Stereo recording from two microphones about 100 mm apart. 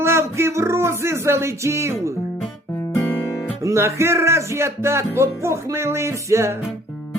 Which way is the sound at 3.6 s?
30° right (ahead or behind).